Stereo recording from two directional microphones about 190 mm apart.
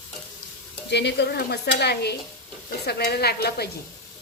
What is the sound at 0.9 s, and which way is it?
Speech, 65° left (ahead or behind).